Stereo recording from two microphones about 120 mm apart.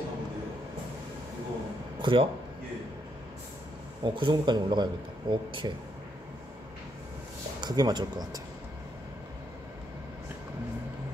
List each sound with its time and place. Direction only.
2.0 s a sound: 40° right (ahead or behind)
4.0 s speech: 40° right (ahead or behind)
7.6 s speech: 35° right (ahead or behind)